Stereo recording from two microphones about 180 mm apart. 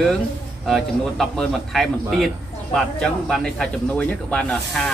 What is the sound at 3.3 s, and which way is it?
A man's voice, 5° left (ahead or behind).